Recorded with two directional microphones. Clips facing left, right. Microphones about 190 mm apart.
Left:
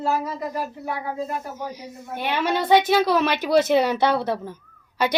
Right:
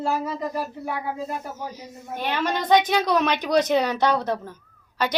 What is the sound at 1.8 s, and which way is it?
A woman's voice, 10° left (ahead or behind).